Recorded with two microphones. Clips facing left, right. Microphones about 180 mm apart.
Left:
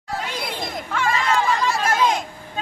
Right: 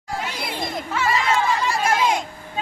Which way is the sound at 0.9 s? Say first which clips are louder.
Even; 5° right (ahead or behind).